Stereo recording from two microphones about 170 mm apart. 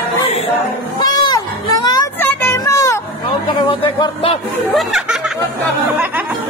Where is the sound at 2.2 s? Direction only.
10° left (ahead or behind).